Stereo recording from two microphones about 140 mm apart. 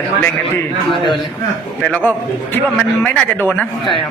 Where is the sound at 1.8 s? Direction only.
10° left (ahead or behind).